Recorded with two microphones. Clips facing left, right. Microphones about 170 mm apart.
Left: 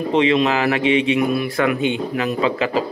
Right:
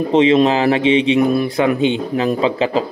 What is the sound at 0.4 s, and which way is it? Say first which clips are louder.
Speech: right 4 dB; 30° right (ahead or behind).